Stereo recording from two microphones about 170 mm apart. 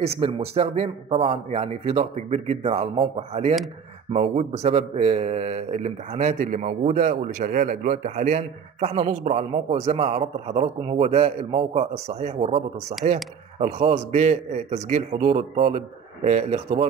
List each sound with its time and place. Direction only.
0.2 s a man's voice: 35° right (ahead or behind)